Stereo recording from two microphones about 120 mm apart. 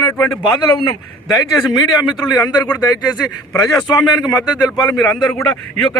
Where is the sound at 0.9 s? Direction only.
30° left (ahead or behind).